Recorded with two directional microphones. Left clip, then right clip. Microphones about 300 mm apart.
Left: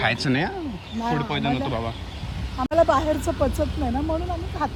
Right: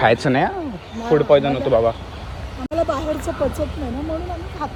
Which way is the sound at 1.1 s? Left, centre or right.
Centre.